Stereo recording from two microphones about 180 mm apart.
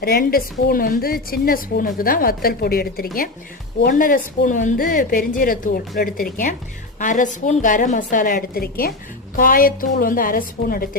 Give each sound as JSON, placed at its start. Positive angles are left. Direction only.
{"t": 0.0, "sound": "a woman's voice", "side_deg": 60}